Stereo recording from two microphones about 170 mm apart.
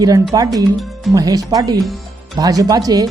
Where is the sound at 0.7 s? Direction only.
Centre (ahead or behind).